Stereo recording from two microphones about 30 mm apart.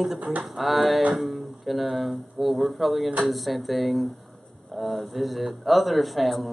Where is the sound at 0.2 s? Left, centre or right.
Right.